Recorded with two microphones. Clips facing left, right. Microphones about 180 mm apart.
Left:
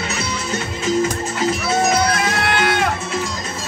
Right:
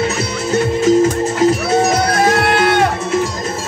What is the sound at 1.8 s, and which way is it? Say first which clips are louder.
Music: right 4 dB; 40° right (ahead or behind).